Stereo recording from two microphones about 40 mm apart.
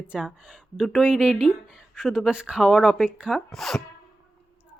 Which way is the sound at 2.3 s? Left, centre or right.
Right.